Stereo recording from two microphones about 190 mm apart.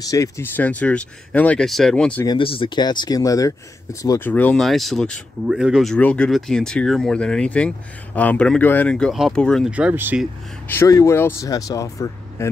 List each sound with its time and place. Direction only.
0.0 s speech: 15° left (ahead or behind)
2.2 s speech: 25° left (ahead or behind); by 9.7 s 5° left (ahead or behind)
9.7 s speech: 5° right (ahead or behind)
10.7 s speech: 15° left (ahead or behind)